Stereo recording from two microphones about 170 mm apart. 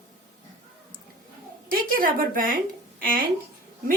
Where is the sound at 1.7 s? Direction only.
55° right (ahead or behind).